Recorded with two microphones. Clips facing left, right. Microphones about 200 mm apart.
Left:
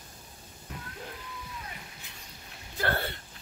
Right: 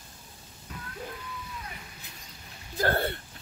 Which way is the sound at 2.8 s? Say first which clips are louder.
Right 4 dB; 45° right (ahead or behind).